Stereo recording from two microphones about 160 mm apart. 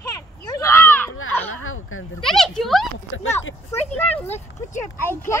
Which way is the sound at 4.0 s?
10° left (ahead or behind).